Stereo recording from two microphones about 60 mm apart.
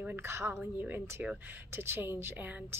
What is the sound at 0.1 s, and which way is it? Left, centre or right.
A woman's voice, right.